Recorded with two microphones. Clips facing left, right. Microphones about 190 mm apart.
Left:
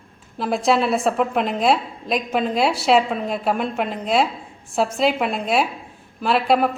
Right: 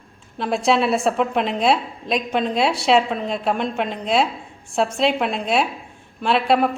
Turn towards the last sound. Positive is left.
turn(degrees=0)  # may be behind; listen again after turning